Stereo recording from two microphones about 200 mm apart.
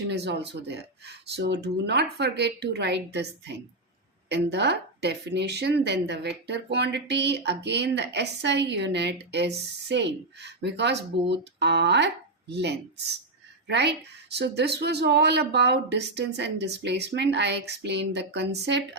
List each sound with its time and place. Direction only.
0.1 s a woman's voice: 60° right (ahead or behind)